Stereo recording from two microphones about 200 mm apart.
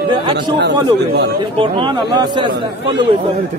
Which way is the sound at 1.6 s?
25° right (ahead or behind).